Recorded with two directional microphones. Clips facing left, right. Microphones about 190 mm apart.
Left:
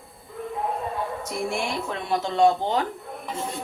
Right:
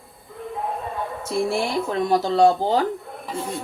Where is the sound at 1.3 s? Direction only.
35° right (ahead or behind).